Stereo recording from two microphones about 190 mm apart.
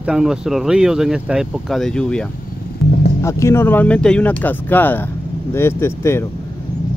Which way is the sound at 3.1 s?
15° left (ahead or behind).